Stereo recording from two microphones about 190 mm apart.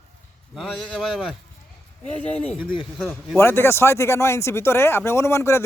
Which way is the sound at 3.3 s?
10° left (ahead or behind).